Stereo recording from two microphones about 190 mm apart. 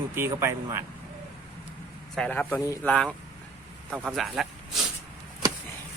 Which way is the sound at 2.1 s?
5° left (ahead or behind).